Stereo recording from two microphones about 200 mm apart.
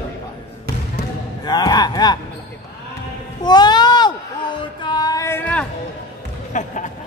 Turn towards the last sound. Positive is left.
turn(degrees=40)  # may be behind; listen again after turning